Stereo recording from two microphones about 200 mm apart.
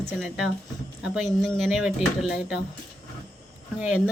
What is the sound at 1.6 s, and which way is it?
A woman's voice, centre (ahead or behind).